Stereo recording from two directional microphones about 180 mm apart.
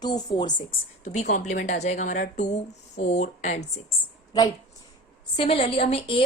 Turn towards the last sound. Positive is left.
turn(degrees=30)  # may be behind; listen again after turning